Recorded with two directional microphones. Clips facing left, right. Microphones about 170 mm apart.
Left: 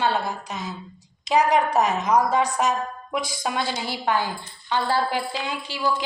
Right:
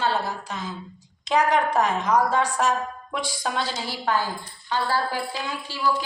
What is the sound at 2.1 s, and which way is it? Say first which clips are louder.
A woman's voice: left 1 dB; 15° left (ahead or behind).